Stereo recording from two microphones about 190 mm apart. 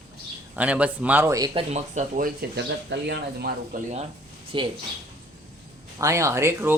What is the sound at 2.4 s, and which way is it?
Speech, 65° right (ahead or behind).